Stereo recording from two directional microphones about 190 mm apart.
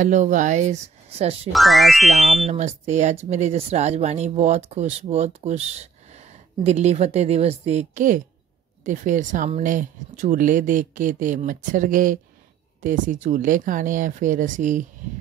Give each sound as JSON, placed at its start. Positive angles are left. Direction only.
{"t": 0.0, "sound": "speech", "side_deg": -40}
{"t": 1.5, "sound": "speech", "side_deg": 0}
{"t": 2.4, "sound": "speech", "side_deg": -35}